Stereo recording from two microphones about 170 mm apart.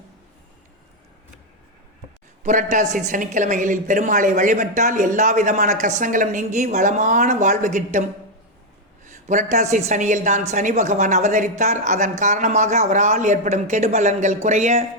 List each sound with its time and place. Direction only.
2.4 s speech: 45° right (ahead or behind)
9.0 s speech: 45° right (ahead or behind)